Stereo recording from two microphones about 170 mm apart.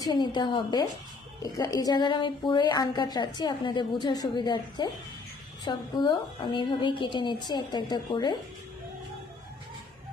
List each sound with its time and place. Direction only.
0.0 s a woman's voice: 25° left (ahead or behind)